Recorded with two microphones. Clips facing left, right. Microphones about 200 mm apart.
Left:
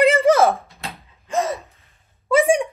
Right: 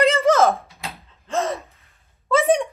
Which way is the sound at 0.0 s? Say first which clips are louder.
Left 2 dB; 15° left (ahead or behind).